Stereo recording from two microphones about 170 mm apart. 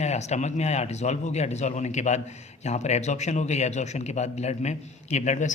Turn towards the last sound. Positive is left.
turn(degrees=45)  # may be behind; listen again after turning